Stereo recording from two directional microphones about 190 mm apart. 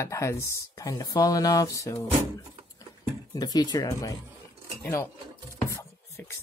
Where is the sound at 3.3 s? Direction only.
20° left (ahead or behind).